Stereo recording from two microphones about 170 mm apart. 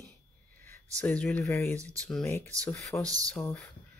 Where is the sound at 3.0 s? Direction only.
20° right (ahead or behind).